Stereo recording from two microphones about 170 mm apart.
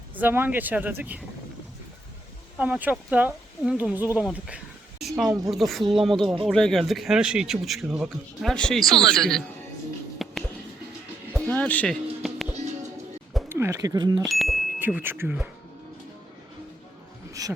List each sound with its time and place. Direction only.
0.2 s speech: 10° right (ahead or behind)
2.6 s speech: 10° right (ahead or behind)
10.2 s a sound: centre (ahead or behind)
11.3 s music: 5° left (ahead or behind)
13.5 s speech: 15° right (ahead or behind)
14.2 s speech: centre (ahead or behind)
14.8 s speech: 10° right (ahead or behind)
17.4 s speech: 20° right (ahead or behind)